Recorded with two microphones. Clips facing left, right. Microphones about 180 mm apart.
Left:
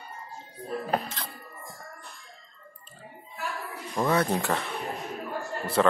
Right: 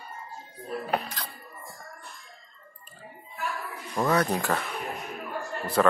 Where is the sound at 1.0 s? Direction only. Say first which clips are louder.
Even; 25° left (ahead or behind).